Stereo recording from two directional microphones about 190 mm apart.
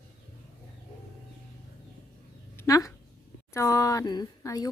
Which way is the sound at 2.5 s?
15° left (ahead or behind).